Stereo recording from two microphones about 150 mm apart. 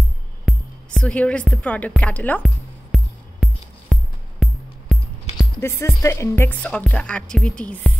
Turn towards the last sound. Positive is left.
turn(degrees=10)  # may be behind; listen again after turning